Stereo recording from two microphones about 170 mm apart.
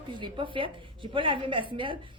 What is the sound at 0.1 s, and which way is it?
A woman's voice, 30° right (ahead or behind).